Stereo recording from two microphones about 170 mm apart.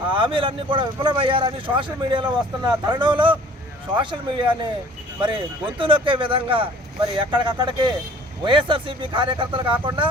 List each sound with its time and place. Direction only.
0.1 s speech: 30° right (ahead or behind)